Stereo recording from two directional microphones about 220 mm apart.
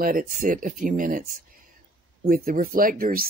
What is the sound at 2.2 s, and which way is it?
Speech, 40° right (ahead or behind).